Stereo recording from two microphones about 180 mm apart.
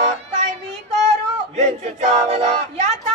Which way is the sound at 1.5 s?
40° right (ahead or behind).